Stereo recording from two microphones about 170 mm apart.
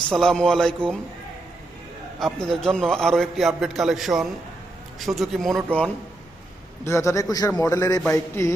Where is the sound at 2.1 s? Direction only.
Centre (ahead or behind).